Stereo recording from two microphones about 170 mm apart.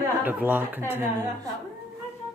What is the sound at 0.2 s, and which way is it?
A woman's voice, 10° right (ahead or behind).